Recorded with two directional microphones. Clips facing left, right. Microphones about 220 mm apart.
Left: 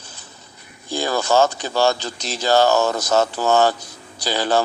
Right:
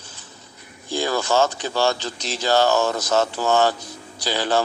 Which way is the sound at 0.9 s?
40° left (ahead or behind).